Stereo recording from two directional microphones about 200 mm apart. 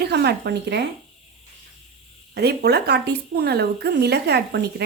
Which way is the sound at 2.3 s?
55° right (ahead or behind).